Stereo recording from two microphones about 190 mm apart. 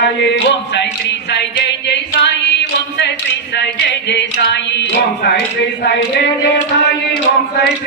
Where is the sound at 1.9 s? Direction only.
65° left (ahead or behind).